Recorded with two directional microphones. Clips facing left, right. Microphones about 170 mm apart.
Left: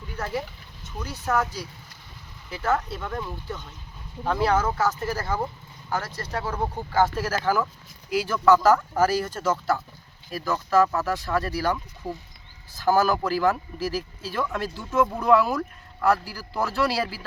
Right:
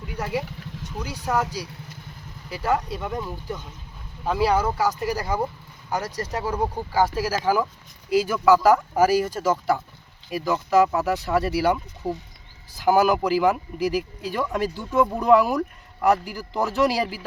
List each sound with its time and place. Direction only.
0.2 s speech: 10° right (ahead or behind)